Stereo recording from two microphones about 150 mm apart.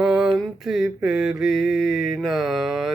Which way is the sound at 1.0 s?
Centre (ahead or behind).